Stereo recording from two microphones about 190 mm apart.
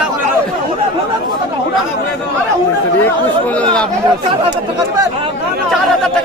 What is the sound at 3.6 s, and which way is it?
Chatter, 5° left (ahead or behind).